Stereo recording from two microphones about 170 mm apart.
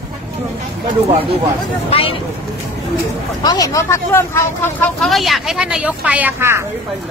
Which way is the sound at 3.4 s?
20° left (ahead or behind).